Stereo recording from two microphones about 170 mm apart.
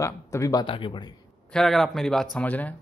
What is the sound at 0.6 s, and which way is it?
Speech, 30° left (ahead or behind).